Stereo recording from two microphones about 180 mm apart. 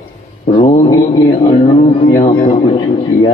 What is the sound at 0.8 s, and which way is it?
A man's voice, 20° left (ahead or behind).